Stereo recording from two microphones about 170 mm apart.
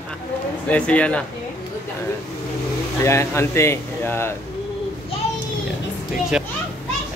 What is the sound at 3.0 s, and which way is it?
Speech, 15° left (ahead or behind).